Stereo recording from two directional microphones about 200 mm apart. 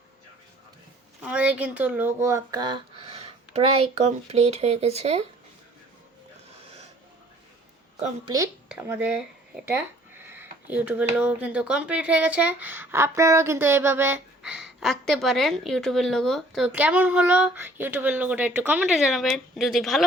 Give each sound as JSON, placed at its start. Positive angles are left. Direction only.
{"t": 1.2, "sound": "speech", "side_deg": -5}
{"t": 7.9, "sound": "a woman's voice", "side_deg": -30}
{"t": 8.7, "sound": "speech", "side_deg": -10}